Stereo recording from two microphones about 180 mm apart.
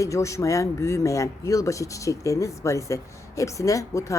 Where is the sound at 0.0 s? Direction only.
15° left (ahead or behind).